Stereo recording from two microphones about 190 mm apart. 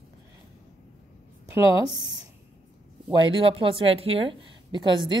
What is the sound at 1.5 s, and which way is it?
Speech, 20° right (ahead or behind).